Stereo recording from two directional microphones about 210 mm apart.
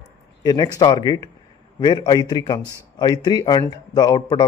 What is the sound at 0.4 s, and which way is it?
Speech, 20° left (ahead or behind).